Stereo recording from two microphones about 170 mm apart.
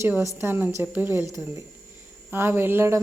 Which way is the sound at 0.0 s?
15° right (ahead or behind).